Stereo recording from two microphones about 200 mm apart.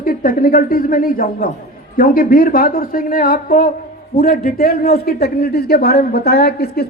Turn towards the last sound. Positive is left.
turn(degrees=55)  # may be behind; listen again after turning